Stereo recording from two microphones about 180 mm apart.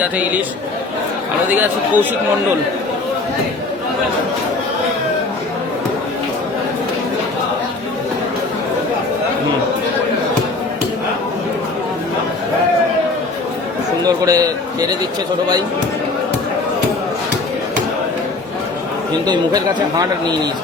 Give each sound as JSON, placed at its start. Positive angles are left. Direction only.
{"t": 1.5, "sound": "speech", "side_deg": -10}
{"t": 14.0, "sound": "a man's voice", "side_deg": -20}
{"t": 19.2, "sound": "speech", "side_deg": -20}